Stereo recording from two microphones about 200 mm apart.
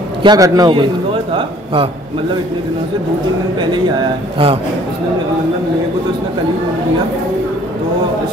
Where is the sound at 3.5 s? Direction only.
20° right (ahead or behind).